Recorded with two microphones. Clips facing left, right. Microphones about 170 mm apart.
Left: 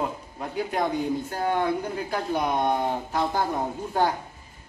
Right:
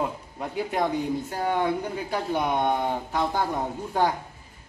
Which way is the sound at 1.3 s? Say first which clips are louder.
Even; centre (ahead or behind).